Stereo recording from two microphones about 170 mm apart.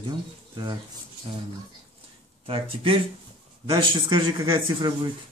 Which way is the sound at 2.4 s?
35° right (ahead or behind).